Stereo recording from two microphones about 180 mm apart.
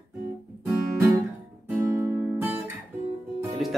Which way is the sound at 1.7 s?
15° right (ahead or behind).